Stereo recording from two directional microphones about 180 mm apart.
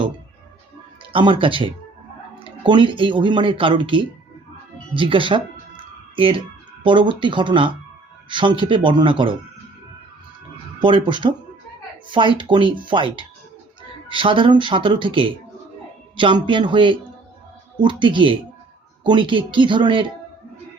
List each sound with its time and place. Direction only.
1.1 s speech: 30° right (ahead or behind)
4.9 s music: 30° right (ahead or behind)
6.8 s speech: 25° right (ahead or behind)
10.8 s speech: 30° right (ahead or behind)